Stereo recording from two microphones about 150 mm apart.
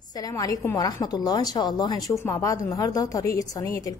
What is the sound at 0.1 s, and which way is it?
A woman's voice, 25° left (ahead or behind).